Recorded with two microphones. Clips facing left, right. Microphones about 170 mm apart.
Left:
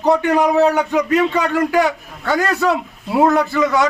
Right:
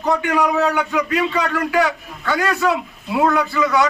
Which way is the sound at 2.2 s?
40° left (ahead or behind).